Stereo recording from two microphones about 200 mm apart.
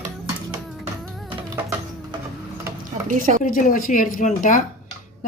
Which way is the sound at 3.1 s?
40° right (ahead or behind).